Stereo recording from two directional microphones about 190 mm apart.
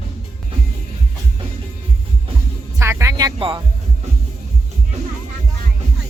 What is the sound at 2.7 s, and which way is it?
Music, 15° right (ahead or behind).